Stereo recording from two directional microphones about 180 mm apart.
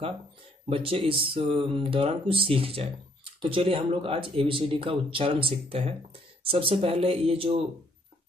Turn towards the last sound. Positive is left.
turn(degrees=-30)  # may be behind; listen again after turning